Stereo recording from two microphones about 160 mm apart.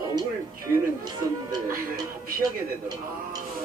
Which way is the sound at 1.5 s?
25° right (ahead or behind).